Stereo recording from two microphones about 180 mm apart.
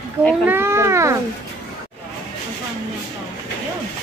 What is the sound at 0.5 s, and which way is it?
Speech, 15° right (ahead or behind).